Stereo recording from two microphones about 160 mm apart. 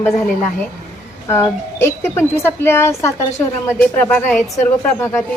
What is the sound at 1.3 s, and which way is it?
Speech, 15° left (ahead or behind).